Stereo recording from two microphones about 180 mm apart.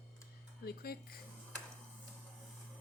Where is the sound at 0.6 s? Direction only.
60° left (ahead or behind).